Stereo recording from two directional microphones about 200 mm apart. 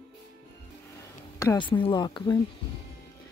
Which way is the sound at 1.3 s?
20° left (ahead or behind).